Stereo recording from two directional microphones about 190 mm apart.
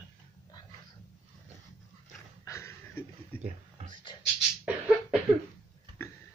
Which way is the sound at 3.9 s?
25° left (ahead or behind).